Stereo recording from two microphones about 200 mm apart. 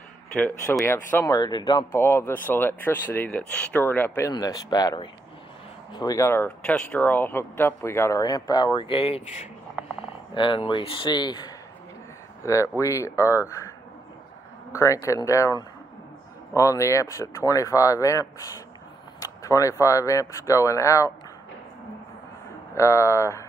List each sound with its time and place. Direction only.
0.4 s speech: 10° left (ahead or behind)
14.7 s speech: 15° left (ahead or behind)
22.8 s speech: 15° left (ahead or behind)